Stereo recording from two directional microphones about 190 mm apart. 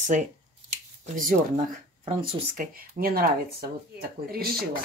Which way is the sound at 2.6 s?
50° right (ahead or behind).